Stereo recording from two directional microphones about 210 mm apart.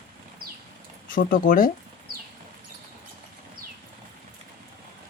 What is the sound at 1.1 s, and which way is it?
Speech, 40° left (ahead or behind).